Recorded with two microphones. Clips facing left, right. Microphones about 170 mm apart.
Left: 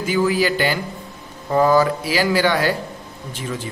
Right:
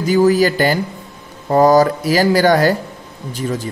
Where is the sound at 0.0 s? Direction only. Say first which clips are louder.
Right 6 dB; 40° right (ahead or behind).